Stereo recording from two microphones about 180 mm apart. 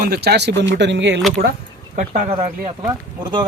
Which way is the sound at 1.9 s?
40° right (ahead or behind).